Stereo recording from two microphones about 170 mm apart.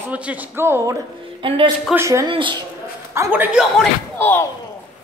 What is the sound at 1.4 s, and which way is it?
Speech, 30° right (ahead or behind).